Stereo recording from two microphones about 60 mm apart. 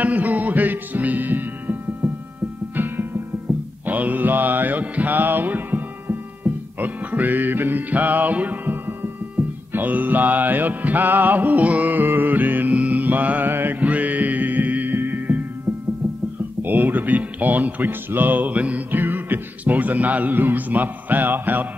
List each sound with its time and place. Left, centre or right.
0.0 s music: right
3.5 s music: centre
3.8 s mantra: right
16.6 s speech: right